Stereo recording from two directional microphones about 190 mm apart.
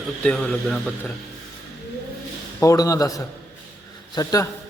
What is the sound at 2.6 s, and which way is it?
Speech, 15° left (ahead or behind).